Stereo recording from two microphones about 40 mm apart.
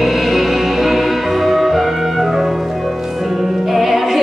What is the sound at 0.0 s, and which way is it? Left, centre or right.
Music, centre.